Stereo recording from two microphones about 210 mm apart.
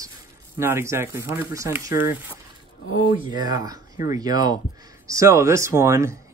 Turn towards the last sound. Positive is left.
turn(degrees=-15)  # may be behind; listen again after turning